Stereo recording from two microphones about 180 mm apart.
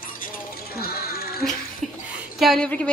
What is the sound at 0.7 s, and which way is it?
Music, 60° left (ahead or behind).